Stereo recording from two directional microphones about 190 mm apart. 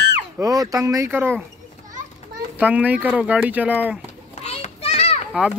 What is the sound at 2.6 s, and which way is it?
Speech, 10° right (ahead or behind).